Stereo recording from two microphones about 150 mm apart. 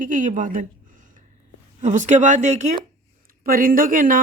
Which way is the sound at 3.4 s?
70° right (ahead or behind).